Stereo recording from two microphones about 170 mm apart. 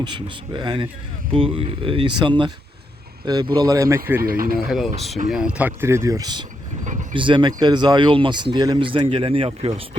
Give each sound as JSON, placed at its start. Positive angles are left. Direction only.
{"t": 0.0, "sound": "speech", "side_deg": -25}
{"t": 4.2, "sound": "speech", "side_deg": -60}
{"t": 4.7, "sound": "speech", "side_deg": 0}